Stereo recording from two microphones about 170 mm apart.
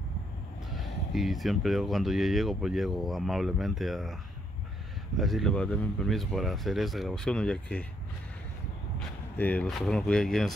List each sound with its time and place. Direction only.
0.7 s speech: centre (ahead or behind)
9.4 s speech: 10° left (ahead or behind)